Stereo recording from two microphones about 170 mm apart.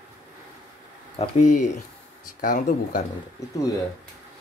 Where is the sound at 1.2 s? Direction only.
45° left (ahead or behind).